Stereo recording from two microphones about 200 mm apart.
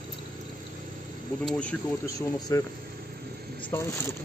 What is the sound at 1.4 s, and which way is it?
Speech, 5° left (ahead or behind).